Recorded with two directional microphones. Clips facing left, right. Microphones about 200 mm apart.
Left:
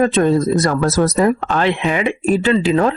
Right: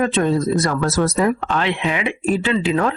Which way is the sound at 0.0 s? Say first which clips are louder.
Left 4 dB; 40° left (ahead or behind).